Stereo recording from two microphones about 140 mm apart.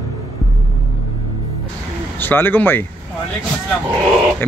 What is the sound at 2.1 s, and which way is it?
Speech, 15° left (ahead or behind).